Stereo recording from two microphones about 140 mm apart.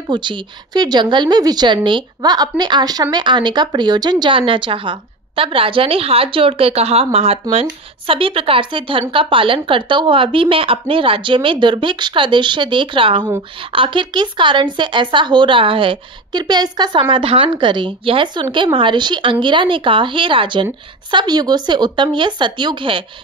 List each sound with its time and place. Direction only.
0.1 s a woman's voice: 35° right (ahead or behind)